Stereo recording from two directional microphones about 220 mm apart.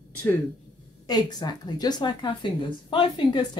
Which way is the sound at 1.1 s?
20° left (ahead or behind).